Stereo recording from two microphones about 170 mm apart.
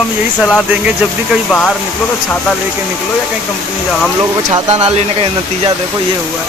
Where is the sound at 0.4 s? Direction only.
Centre (ahead or behind).